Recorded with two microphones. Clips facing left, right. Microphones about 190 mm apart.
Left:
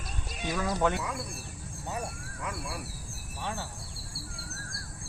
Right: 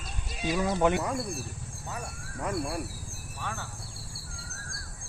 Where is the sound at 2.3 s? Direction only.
45° right (ahead or behind).